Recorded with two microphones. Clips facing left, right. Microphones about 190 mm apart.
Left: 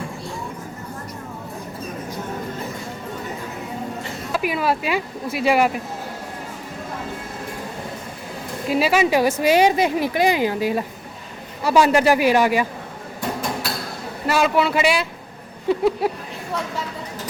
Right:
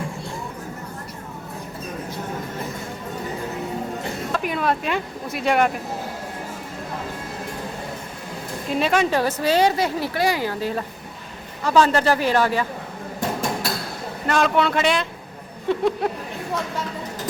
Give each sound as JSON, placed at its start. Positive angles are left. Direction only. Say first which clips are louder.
{"t": 4.3, "sound": "speech", "louder": "left 2 dB", "side_deg": 5}
{"t": 8.7, "sound": "a woman's voice", "louder": "left 2 dB", "side_deg": 5}
{"t": 14.3, "sound": "speech", "louder": "left 1 dB", "side_deg": 5}
{"t": 15.7, "sound": "a sound", "louder": "left 2 dB", "side_deg": 5}